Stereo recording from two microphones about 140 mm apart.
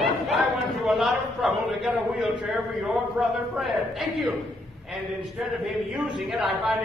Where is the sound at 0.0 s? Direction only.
Centre (ahead or behind).